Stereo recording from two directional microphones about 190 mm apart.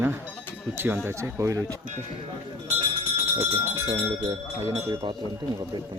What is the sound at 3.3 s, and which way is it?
Speech, 15° right (ahead or behind).